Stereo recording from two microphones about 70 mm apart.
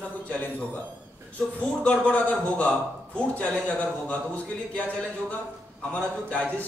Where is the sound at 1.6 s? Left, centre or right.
Centre.